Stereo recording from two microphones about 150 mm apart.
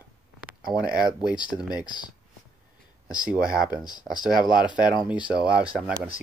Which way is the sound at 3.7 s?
25° left (ahead or behind).